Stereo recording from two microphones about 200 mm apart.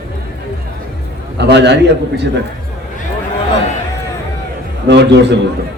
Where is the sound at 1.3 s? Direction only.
60° right (ahead or behind).